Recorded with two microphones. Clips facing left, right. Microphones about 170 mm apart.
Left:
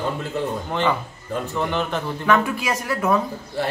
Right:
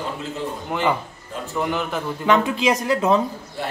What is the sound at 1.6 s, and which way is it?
Speech, 5° right (ahead or behind).